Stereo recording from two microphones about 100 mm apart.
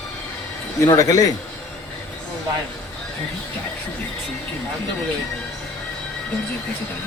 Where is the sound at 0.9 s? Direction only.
35° left (ahead or behind).